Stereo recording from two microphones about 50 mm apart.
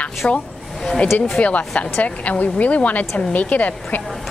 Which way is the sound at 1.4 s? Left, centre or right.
Left.